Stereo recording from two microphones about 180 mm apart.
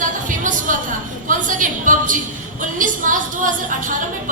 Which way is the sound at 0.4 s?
45° right (ahead or behind).